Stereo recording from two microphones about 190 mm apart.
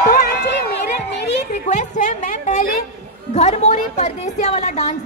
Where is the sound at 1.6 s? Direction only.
40° left (ahead or behind).